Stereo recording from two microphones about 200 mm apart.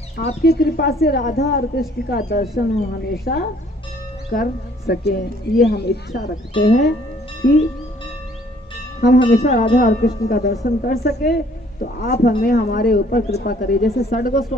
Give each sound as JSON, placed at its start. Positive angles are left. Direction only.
{"t": 0.4, "sound": "speech", "side_deg": 55}
{"t": 9.0, "sound": "speech", "side_deg": 50}